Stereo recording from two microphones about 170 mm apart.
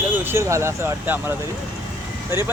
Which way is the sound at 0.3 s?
15° right (ahead or behind).